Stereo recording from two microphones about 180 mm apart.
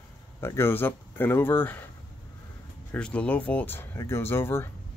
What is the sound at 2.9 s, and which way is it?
Speech, 5° left (ahead or behind).